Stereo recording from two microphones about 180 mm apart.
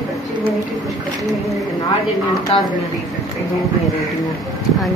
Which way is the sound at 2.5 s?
30° left (ahead or behind).